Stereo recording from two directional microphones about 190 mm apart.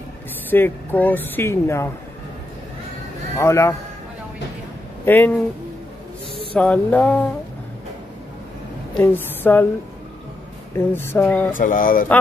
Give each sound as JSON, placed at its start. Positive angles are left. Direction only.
{"t": 0.5, "sound": "speech", "side_deg": 10}
{"t": 3.3, "sound": "speech", "side_deg": 15}
{"t": 5.0, "sound": "speech", "side_deg": 10}
{"t": 6.5, "sound": "speech", "side_deg": 5}
{"t": 8.9, "sound": "a woman's voice", "side_deg": 10}
{"t": 10.9, "sound": "speech", "side_deg": 10}
{"t": 11.5, "sound": "speech", "side_deg": 45}